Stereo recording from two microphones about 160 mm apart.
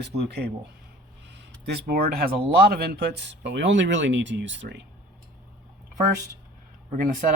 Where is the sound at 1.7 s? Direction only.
80° right.